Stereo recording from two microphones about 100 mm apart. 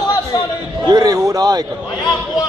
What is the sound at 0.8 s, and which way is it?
Speech, 40° right (ahead or behind).